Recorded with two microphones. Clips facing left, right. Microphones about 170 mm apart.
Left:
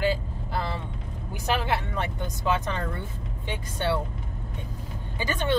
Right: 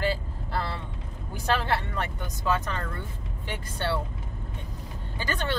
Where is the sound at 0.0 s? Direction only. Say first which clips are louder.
Left 2 dB; 15° left (ahead or behind).